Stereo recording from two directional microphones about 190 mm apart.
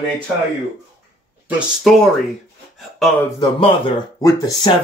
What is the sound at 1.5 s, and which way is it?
Speech, 5° right (ahead or behind).